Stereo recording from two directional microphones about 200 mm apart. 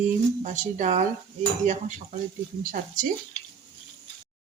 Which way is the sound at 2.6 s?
45° right (ahead or behind).